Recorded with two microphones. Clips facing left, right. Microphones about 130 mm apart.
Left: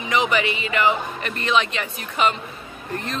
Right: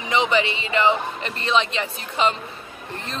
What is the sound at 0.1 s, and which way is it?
Speech, 25° right (ahead or behind).